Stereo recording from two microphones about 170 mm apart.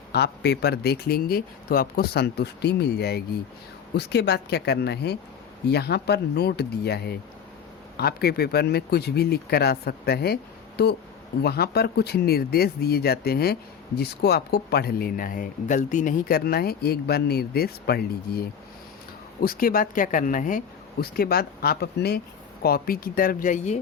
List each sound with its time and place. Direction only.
0.1 s speech: 75° left (ahead or behind)
3.9 s speech: 80° left; by 20.6 s 50° left (ahead or behind)
21.0 s speech: 65° left (ahead or behind); by 23.8 s 45° left (ahead or behind)